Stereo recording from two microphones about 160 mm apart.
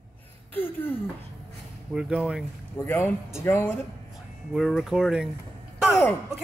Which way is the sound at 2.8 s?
15° left (ahead or behind).